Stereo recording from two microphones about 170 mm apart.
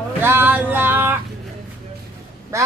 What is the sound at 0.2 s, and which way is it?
Music, 10° right (ahead or behind).